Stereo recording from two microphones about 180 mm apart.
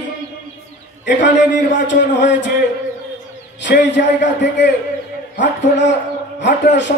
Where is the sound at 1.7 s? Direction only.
90° left.